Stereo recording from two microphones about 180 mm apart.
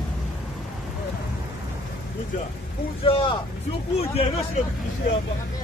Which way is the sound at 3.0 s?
30° left (ahead or behind).